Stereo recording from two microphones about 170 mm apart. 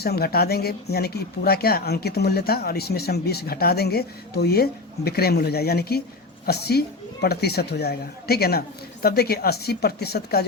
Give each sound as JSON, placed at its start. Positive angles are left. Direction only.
{"t": 0.0, "sound": "speech", "side_deg": 65}